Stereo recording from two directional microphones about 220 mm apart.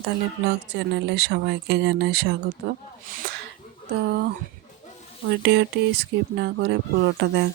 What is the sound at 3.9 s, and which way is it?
Speech, 45° right (ahead or behind).